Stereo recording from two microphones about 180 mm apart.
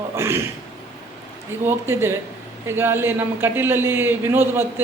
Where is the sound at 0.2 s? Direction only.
15° right (ahead or behind).